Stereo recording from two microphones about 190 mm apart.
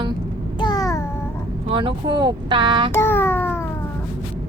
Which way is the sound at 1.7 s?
25° right (ahead or behind).